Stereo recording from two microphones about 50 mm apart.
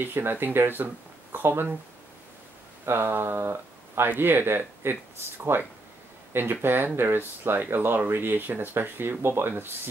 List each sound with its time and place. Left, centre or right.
0.0 s speech: right
2.8 s speech: right